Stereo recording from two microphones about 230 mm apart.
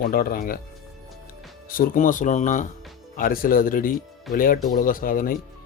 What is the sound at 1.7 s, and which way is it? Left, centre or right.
Speech, left.